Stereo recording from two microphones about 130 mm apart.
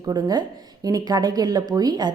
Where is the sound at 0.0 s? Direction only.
30° right (ahead or behind).